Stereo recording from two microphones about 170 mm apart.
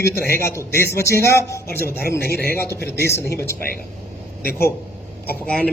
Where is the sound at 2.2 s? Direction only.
70° left (ahead or behind).